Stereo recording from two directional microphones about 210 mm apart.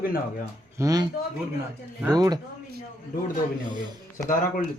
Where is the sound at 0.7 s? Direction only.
15° right (ahead or behind).